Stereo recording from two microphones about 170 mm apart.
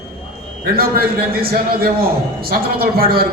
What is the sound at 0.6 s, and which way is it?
A man's voice, 60° right (ahead or behind).